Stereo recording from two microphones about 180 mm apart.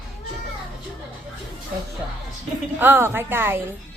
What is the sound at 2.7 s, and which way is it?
Speech, 10° right (ahead or behind).